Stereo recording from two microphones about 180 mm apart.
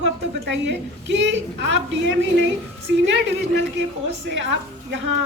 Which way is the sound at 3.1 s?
80° right.